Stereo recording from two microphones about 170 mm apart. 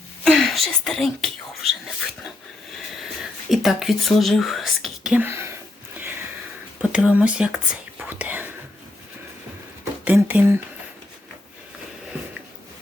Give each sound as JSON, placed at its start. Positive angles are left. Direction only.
{"t": 0.3, "sound": "speech", "side_deg": 0}
{"t": 3.0, "sound": "speech", "side_deg": 0}
{"t": 6.9, "sound": "speech", "side_deg": -5}
{"t": 10.0, "sound": "speech", "side_deg": -10}